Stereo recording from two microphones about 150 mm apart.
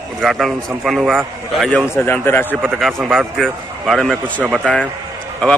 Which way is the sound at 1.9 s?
15° left (ahead or behind).